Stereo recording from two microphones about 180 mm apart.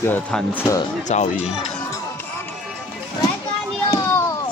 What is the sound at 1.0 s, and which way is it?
Speech, 45° left (ahead or behind).